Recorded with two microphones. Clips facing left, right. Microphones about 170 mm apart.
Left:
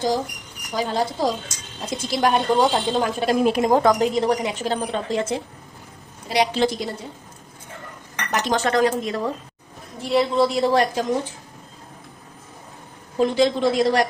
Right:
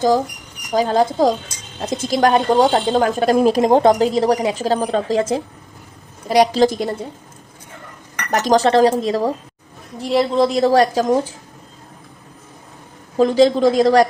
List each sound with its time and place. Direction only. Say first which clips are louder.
0.7 s a woman's voice: right 7 dB; 45° right (ahead or behind)
8.3 s a woman's voice: right 7 dB; 40° right (ahead or behind)
13.1 s a woman's voice: right 6 dB; 40° right (ahead or behind)